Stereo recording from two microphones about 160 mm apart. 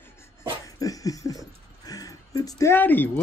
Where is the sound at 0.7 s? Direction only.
20° left (ahead or behind).